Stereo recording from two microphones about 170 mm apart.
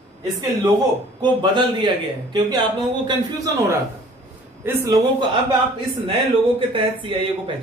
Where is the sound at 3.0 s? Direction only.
20° right (ahead or behind).